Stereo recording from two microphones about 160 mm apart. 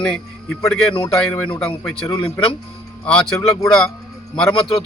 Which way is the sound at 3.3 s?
15° left (ahead or behind).